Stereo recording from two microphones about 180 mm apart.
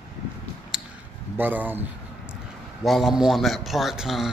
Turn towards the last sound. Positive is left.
turn(degrees=-5)  # may be behind; listen again after turning